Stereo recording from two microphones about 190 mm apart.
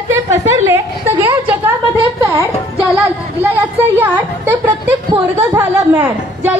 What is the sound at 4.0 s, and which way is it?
Speech, 10° right (ahead or behind).